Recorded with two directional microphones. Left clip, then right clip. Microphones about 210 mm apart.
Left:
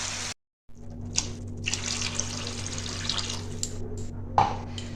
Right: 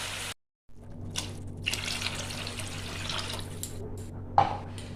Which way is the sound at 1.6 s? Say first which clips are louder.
Left 1 dB; 5° right (ahead or behind).